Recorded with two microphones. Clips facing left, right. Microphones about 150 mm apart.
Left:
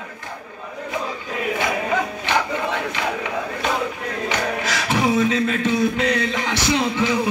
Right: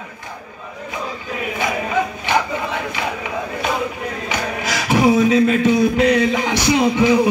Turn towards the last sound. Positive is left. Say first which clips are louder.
# right 5 dB
turn(degrees=-15)  # may be behind; listen again after turning